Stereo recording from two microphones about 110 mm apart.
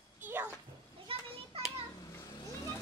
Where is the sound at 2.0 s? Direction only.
25° left (ahead or behind).